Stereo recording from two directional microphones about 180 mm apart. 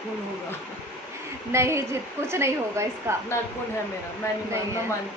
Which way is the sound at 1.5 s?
15° right (ahead or behind).